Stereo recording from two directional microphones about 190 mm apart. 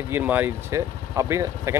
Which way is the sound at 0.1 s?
10° right (ahead or behind).